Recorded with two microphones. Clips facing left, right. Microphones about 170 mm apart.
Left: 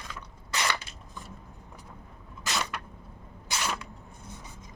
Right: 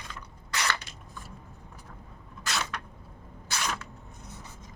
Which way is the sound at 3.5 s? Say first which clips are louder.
Left 1 dB; 15° left (ahead or behind).